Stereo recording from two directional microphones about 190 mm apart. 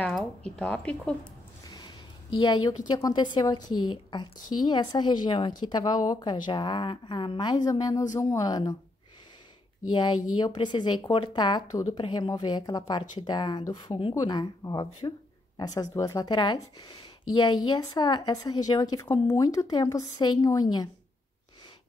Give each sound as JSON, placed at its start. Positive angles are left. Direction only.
{"t": 0.0, "sound": "speech", "side_deg": 5}
{"t": 2.9, "sound": "speech", "side_deg": 20}
{"t": 9.9, "sound": "speech", "side_deg": 25}